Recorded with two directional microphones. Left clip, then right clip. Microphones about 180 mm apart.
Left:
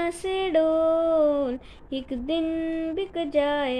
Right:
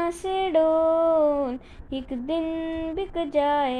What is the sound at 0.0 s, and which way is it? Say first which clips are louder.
Music: right 1 dB; 15° left (ahead or behind).